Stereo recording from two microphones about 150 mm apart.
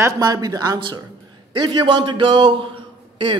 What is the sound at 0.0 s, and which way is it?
A man's voice, 25° right (ahead or behind).